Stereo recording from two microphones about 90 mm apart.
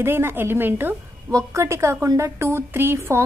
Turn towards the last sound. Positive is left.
turn(degrees=-30)  # may be behind; listen again after turning